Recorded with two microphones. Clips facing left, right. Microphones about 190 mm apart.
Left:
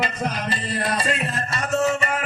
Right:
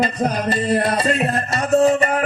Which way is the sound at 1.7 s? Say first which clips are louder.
Right 7 dB; 35° right (ahead or behind).